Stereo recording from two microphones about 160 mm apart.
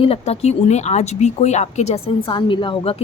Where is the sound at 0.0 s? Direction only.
40° left (ahead or behind).